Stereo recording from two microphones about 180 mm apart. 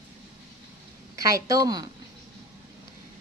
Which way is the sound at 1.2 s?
20° right (ahead or behind).